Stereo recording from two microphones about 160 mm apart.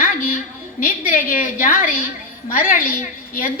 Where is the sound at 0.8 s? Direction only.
60° left (ahead or behind).